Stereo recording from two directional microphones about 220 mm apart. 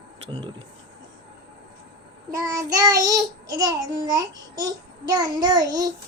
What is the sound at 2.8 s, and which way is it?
A child's voice, 15° right (ahead or behind).